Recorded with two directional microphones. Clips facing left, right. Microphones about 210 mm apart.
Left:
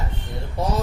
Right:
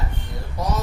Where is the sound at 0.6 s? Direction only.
25° left (ahead or behind).